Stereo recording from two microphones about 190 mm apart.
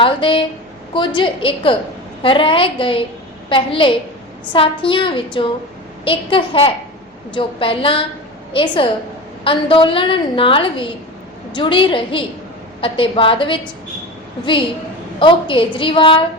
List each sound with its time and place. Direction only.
0.0 s a woman's voice: 25° left (ahead or behind)
15.2 s a woman's voice: 25° left (ahead or behind)